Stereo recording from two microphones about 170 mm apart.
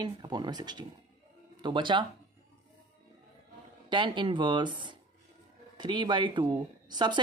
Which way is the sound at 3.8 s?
30° right (ahead or behind).